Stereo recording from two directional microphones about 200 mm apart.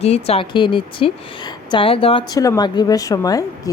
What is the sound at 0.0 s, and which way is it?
Speech, 30° left (ahead or behind).